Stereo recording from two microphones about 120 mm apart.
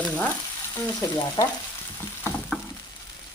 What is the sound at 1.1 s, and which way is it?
Stir, 30° left (ahead or behind).